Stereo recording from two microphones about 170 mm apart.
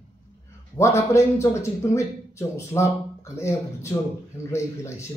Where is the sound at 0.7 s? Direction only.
15° left (ahead or behind).